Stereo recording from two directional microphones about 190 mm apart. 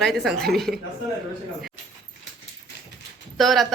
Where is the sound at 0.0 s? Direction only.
Centre (ahead or behind).